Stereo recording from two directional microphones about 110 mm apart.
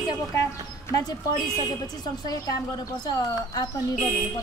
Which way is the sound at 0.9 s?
35° left (ahead or behind).